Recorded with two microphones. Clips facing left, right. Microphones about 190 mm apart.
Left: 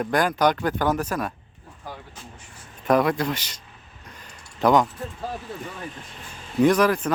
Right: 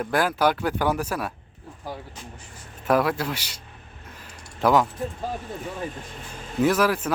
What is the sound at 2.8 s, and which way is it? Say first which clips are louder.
Speech: left 2 dB; 5° right (ahead or behind).